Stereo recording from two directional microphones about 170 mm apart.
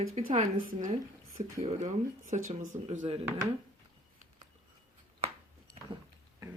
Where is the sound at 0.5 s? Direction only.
50° right (ahead or behind).